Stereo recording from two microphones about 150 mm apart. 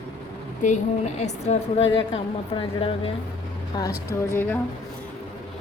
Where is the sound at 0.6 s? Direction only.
50° left (ahead or behind); by 3.9 s 30° left (ahead or behind).